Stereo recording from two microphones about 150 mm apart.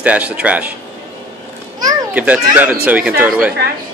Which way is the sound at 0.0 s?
10° right (ahead or behind).